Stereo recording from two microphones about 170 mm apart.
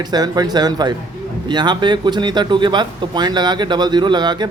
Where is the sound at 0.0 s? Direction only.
25° right (ahead or behind).